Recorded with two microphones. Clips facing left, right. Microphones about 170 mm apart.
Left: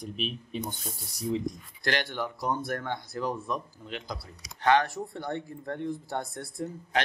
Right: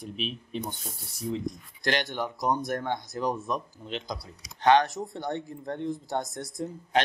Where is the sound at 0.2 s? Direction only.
5° left (ahead or behind).